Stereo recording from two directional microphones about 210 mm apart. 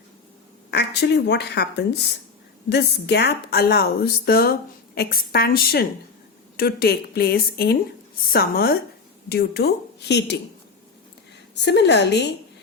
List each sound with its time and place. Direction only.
0.7 s a woman's voice: 55° left (ahead or behind)
11.6 s a woman's voice: 55° left (ahead or behind)